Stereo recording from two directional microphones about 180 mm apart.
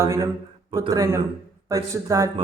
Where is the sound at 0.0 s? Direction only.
15° right (ahead or behind).